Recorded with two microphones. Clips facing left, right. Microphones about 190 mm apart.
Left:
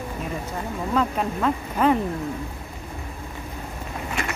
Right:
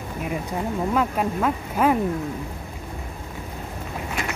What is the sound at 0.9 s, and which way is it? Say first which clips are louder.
Speech: left 2 dB; 5° right (ahead or behind).